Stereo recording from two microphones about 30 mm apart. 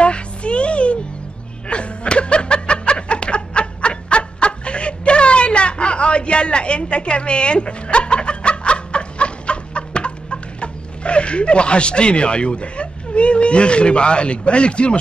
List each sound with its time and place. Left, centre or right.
0.0 s music: left
1.7 s snicker: left